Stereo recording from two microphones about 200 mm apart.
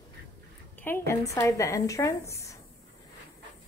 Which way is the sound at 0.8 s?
10° left (ahead or behind).